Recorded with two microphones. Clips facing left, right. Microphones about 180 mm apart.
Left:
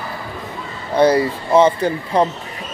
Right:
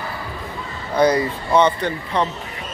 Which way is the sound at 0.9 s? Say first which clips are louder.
Left 3 dB; 30° left (ahead or behind).